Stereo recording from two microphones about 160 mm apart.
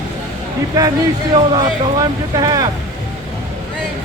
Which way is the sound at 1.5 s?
25° right (ahead or behind).